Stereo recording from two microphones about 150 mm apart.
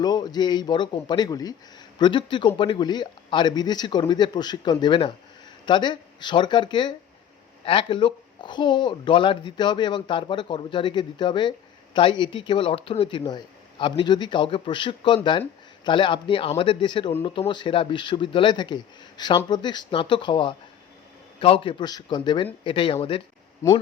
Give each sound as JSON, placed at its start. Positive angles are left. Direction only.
{"t": 0.0, "sound": "speech", "side_deg": 25}